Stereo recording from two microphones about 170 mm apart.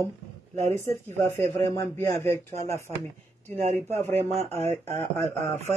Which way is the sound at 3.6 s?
40° right (ahead or behind).